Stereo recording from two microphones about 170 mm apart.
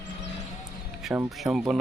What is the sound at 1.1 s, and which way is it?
Speech, 5° right (ahead or behind).